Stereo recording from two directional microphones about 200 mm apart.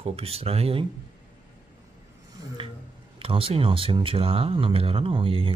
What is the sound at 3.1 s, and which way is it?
Speech, 25° right (ahead or behind).